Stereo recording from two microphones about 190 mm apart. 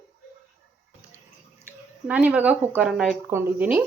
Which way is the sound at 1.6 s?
10° right (ahead or behind).